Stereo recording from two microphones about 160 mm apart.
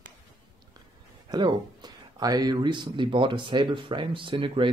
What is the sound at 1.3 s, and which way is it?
Speech, 25° right (ahead or behind).